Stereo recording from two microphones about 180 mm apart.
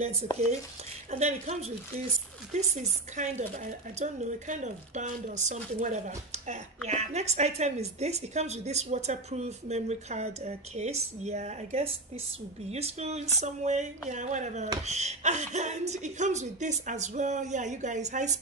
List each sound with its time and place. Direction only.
1.2 s a woman's voice: 40° right (ahead or behind)